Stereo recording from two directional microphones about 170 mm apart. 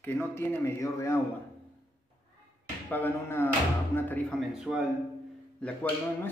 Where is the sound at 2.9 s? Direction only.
10° left (ahead or behind).